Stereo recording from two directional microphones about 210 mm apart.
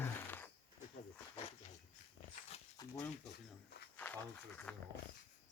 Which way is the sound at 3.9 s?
10° left (ahead or behind).